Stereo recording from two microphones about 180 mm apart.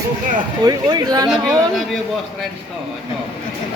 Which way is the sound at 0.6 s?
20° right (ahead or behind).